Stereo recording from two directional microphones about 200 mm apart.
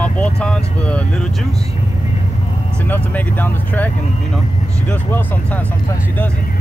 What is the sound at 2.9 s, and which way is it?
Speech, 10° left (ahead or behind).